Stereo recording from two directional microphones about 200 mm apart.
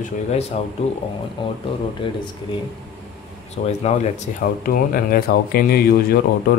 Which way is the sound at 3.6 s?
35° left (ahead or behind).